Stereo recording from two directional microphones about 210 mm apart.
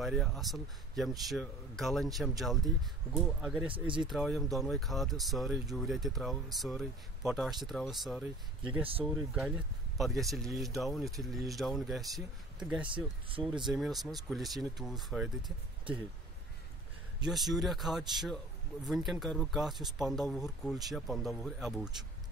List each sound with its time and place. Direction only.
0.0 s speech: centre (ahead or behind)
3.6 s speech: 25° right (ahead or behind)
4.1 s speech: centre (ahead or behind)
12.8 s speech: 25° right (ahead or behind)
13.7 s speech: centre (ahead or behind)
17.3 s speech: centre (ahead or behind)